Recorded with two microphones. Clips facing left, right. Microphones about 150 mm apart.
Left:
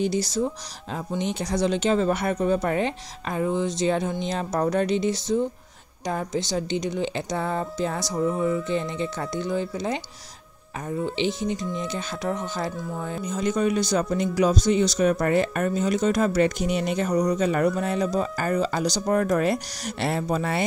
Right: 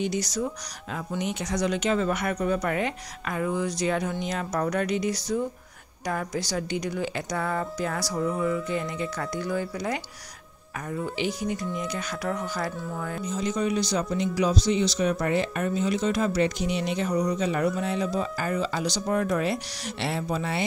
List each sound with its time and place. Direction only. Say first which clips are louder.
0.0 s speech: left 4 dB; 30° left (ahead or behind)
13.3 s speech: left 4 dB; 55° left (ahead or behind)